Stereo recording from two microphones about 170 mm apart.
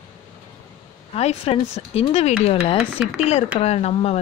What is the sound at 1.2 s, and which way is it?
Speech, 35° left (ahead or behind).